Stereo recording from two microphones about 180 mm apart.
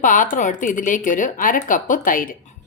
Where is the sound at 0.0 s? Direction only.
45° left (ahead or behind).